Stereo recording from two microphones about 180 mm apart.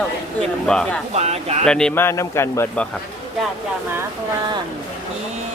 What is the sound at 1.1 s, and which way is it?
Speech, 35° right (ahead or behind).